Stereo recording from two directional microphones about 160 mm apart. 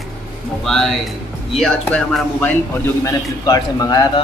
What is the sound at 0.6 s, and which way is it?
Speech, 5° left (ahead or behind).